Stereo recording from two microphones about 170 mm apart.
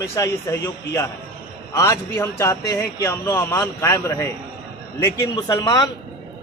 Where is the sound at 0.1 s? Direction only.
20° left (ahead or behind).